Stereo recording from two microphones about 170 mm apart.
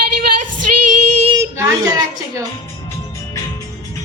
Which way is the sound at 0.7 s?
50° right (ahead or behind).